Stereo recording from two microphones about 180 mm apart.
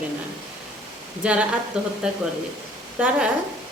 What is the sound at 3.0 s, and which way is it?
Speech, 10° right (ahead or behind).